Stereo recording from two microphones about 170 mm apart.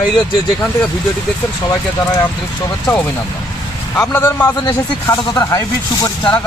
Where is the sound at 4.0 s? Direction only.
10° left (ahead or behind).